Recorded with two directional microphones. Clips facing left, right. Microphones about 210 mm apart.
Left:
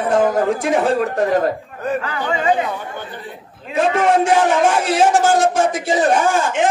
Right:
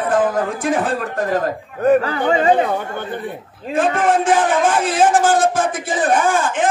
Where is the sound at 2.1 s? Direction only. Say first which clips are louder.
Right 5 dB; 55° right (ahead or behind).